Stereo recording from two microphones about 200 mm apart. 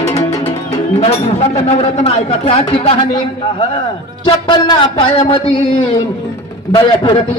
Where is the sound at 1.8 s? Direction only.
30° left (ahead or behind).